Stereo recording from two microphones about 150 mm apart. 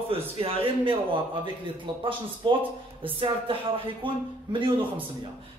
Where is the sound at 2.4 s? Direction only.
30° right (ahead or behind).